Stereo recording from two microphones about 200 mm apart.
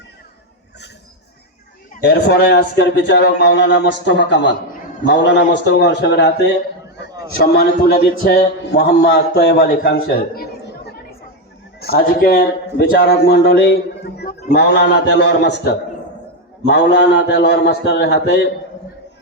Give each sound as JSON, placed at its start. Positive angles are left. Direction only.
{"t": 2.0, "sound": "a man's voice", "side_deg": 60}
{"t": 7.3, "sound": "a man's voice", "side_deg": 45}